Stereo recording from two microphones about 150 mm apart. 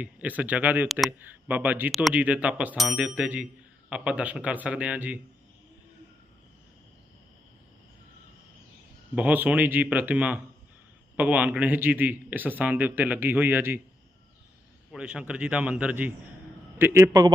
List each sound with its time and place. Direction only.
0.0 s a man's voice: 10° right (ahead or behind)
9.1 s a man's voice: 10° right (ahead or behind)
14.9 s a man's voice: 5° right (ahead or behind); by 17.3 s 20° right (ahead or behind)